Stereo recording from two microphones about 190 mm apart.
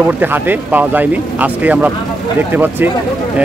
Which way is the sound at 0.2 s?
10° right (ahead or behind).